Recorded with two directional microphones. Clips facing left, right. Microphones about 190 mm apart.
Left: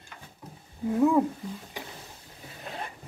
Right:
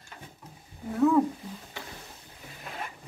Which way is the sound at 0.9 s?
10° left (ahead or behind).